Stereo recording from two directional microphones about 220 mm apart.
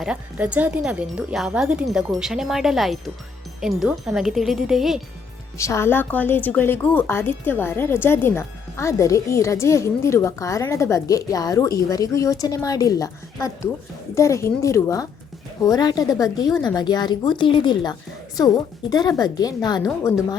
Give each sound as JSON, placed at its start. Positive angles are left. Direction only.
{"t": 0.0, "sound": "speech", "side_deg": -5}
{"t": 5.5, "sound": "a woman's voice", "side_deg": 15}